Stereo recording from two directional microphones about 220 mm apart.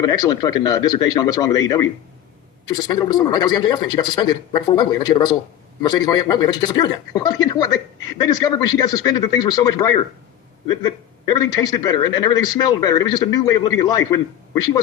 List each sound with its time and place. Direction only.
0.0 s a man's voice: 20° left (ahead or behind)